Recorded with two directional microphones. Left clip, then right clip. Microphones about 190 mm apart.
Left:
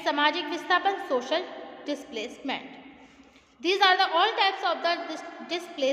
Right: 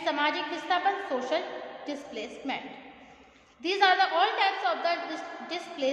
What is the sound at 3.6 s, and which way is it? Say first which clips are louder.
A woman's voice: left 2 dB; 50° left (ahead or behind).